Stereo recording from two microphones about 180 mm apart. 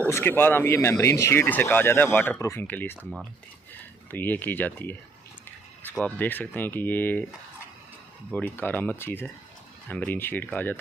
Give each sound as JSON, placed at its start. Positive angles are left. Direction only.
{"t": 0.1, "sound": "speech", "side_deg": 10}
{"t": 4.1, "sound": "speech", "side_deg": 10}
{"t": 5.9, "sound": "speech", "side_deg": 10}
{"t": 8.5, "sound": "speech", "side_deg": 10}